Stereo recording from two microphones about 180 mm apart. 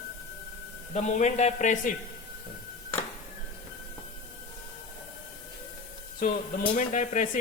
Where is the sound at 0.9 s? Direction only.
40° left (ahead or behind).